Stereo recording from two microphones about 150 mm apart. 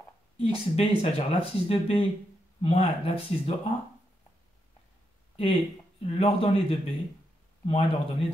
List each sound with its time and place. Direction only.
0.4 s speech: 40° left (ahead or behind)
5.3 s speech: 40° left (ahead or behind)